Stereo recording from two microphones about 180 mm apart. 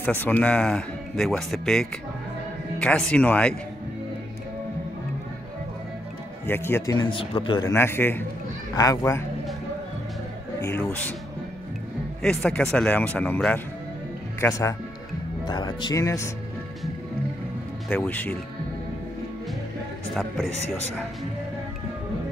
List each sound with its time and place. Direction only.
0.0 s speech: 10° left (ahead or behind)
6.4 s speech: 15° left (ahead or behind)
7.1 s speech: 30° left (ahead or behind)
10.6 s speech: 10° left (ahead or behind)
12.2 s speech: 5° left (ahead or behind)
17.8 s speech: 10° left (ahead or behind)